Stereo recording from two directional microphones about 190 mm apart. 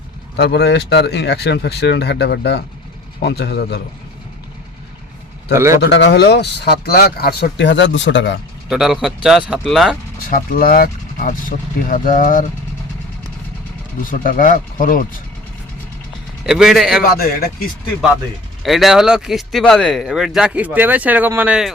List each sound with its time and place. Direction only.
0.3 s speech: 60° left (ahead or behind)
5.5 s speech: 15° right (ahead or behind)
5.8 s speech: 65° left (ahead or behind)
8.7 s speech: 5° right (ahead or behind)
10.2 s speech: 50° left (ahead or behind)
14.0 s speech: 45° left (ahead or behind)
16.5 s speech: 5° right (ahead or behind)
17.0 s speech: 50° left (ahead or behind)
18.6 s speech: centre (ahead or behind)